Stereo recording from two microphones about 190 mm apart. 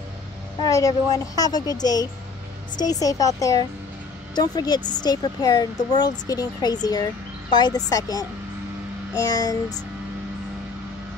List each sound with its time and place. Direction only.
0.6 s a child's voice: 20° left (ahead or behind)